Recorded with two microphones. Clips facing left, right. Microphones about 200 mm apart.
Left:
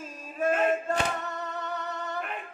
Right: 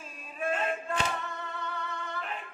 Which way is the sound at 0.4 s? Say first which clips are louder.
Left 5 dB; 40° left (ahead or behind).